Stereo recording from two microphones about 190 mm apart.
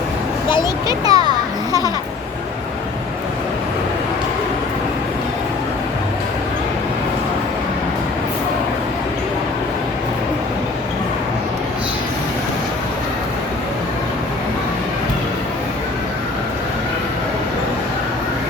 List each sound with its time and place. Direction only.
0.9 s a child's voice: 20° right (ahead or behind)